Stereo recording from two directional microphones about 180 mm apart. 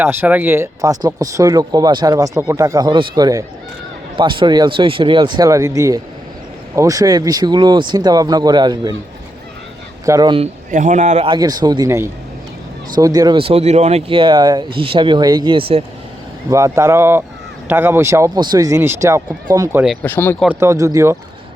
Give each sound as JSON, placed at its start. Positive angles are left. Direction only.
{"t": 0.0, "sound": "speech", "side_deg": -10}
{"t": 10.1, "sound": "speech", "side_deg": -25}
{"t": 10.7, "sound": "speech", "side_deg": -45}
{"t": 11.3, "sound": "speech", "side_deg": -25}
{"t": 16.5, "sound": "speech", "side_deg": -15}
{"t": 20.0, "sound": "speech", "side_deg": 10}
{"t": 20.6, "sound": "speech", "side_deg": -15}